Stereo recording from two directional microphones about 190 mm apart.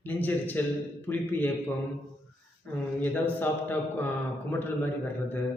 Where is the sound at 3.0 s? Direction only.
10° left (ahead or behind).